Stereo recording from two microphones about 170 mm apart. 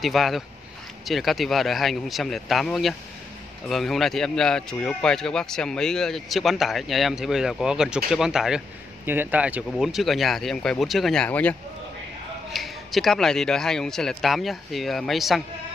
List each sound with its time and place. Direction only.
0.0 s speech: centre (ahead or behind)
12.5 s speech: centre (ahead or behind)